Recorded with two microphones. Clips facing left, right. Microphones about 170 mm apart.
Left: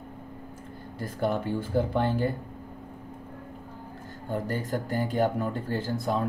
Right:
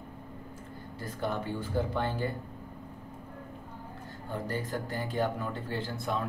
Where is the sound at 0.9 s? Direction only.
50° left (ahead or behind).